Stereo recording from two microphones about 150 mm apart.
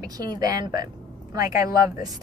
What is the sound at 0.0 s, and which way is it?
Speech, 25° right (ahead or behind).